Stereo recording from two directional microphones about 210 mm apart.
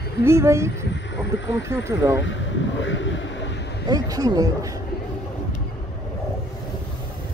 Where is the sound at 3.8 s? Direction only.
15° right (ahead or behind).